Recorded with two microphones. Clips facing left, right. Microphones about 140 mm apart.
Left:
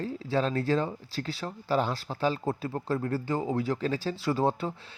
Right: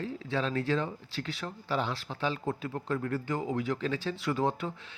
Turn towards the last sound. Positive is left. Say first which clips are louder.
# left 3 dB
turn(degrees=35)  # may be behind; listen again after turning